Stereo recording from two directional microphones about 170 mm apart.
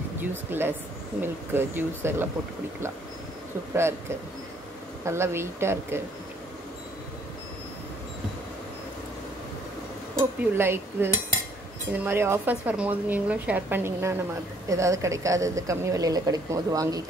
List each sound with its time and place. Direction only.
0.2 s speech: 10° right (ahead or behind)
5.0 s speech: 15° right (ahead or behind)
10.1 s a woman's voice: 15° right (ahead or behind)